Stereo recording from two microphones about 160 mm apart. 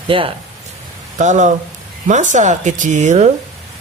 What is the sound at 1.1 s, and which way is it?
Speech, 50° right (ahead or behind).